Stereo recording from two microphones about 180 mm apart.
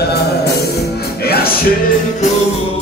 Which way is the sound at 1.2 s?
60° left (ahead or behind).